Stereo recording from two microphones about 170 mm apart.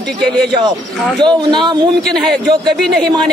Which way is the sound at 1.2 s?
25° right (ahead or behind).